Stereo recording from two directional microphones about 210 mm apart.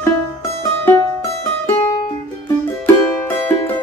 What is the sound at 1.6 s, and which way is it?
Music, 10° left (ahead or behind).